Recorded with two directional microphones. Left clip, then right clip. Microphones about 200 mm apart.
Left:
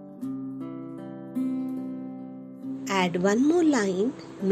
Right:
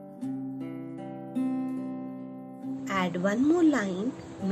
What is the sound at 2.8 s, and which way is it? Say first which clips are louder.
A woman's voice: left 4 dB; 30° left (ahead or behind).